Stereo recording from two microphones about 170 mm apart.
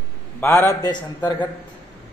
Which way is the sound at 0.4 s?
15° left (ahead or behind).